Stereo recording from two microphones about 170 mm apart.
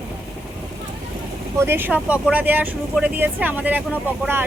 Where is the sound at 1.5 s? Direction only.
15° right (ahead or behind).